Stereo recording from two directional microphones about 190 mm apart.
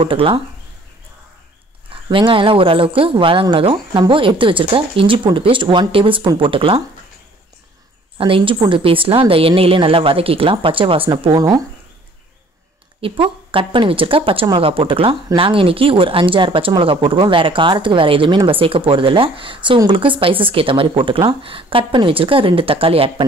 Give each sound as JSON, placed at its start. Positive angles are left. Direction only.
{"t": 0.0, "sound": "speech", "side_deg": -30}
{"t": 2.0, "sound": "speech", "side_deg": -25}
{"t": 8.2, "sound": "speech", "side_deg": -25}
{"t": 13.0, "sound": "speech", "side_deg": -30}